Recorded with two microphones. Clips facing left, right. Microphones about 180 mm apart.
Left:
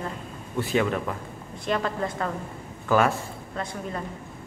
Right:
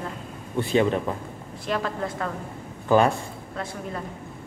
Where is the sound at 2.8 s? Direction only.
30° right (ahead or behind).